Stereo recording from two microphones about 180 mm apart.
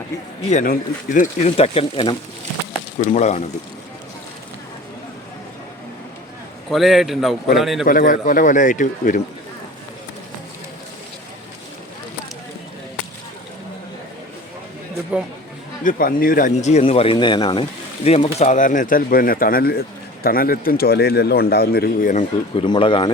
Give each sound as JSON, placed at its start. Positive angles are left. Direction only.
{"t": 0.5, "sound": "speech", "side_deg": 50}
{"t": 3.1, "sound": "speech", "side_deg": 40}
{"t": 6.7, "sound": "a man's voice", "side_deg": 0}
{"t": 7.9, "sound": "speech", "side_deg": 50}
{"t": 15.8, "sound": "speech", "side_deg": 50}